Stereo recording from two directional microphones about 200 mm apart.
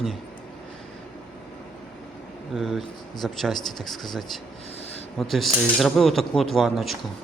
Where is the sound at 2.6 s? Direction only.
Centre (ahead or behind).